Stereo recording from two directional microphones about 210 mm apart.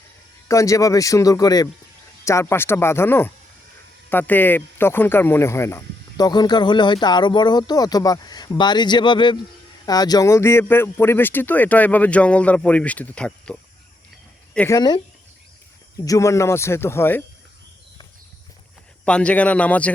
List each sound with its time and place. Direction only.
0.4 s speech: 15° left (ahead or behind)
14.8 s speech: 20° left (ahead or behind)
19.0 s speech: 5° left (ahead or behind)